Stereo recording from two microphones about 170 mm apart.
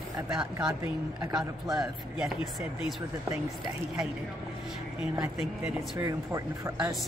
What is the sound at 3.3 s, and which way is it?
Speech, 20° right (ahead or behind).